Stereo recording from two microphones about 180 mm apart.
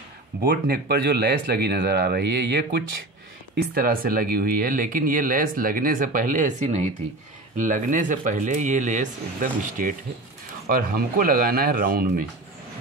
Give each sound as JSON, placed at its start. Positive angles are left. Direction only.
{"t": 0.4, "sound": "speech", "side_deg": -55}
{"t": 3.7, "sound": "speech", "side_deg": -55}